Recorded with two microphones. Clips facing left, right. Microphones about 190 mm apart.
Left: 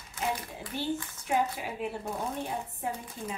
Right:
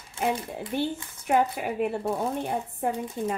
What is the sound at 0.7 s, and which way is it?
Speech, 55° right (ahead or behind).